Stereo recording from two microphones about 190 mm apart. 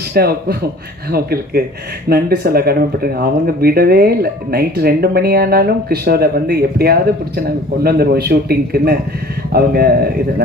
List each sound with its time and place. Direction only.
0.1 s a man's voice: 55° right (ahead or behind)